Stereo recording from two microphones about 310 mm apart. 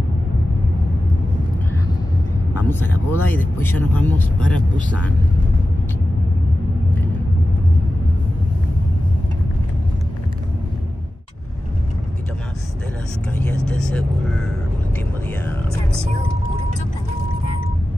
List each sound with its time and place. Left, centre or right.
2.6 s speech: centre
13.7 s speech: centre